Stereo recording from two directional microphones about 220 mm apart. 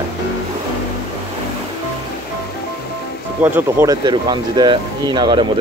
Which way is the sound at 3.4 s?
10° right (ahead or behind).